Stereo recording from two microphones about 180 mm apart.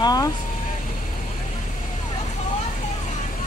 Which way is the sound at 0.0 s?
20° left (ahead or behind).